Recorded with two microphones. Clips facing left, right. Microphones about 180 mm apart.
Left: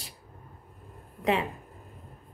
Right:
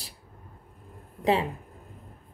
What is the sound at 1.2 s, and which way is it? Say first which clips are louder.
Speech: right 2 dB; 30° right (ahead or behind).